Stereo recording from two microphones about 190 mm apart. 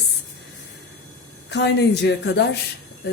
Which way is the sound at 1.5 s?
65° left (ahead or behind).